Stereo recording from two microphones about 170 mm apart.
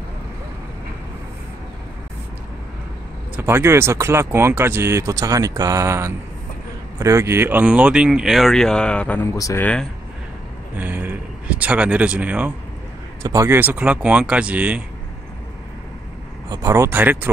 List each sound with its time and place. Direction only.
3.3 s speech: 15° right (ahead or behind); by 9.3 s 10° left (ahead or behind)
9.4 s speech: 20° left (ahead or behind)
10.8 s speech: 10° right (ahead or behind)
13.2 s speech: 20° right (ahead or behind)
16.4 s speech: 20° right (ahead or behind)